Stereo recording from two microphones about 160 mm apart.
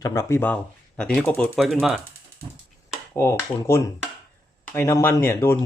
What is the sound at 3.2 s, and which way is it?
Speech, 15° left (ahead or behind).